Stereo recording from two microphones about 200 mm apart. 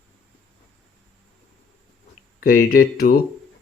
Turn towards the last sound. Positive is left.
turn(degrees=45)  # may be behind; listen again after turning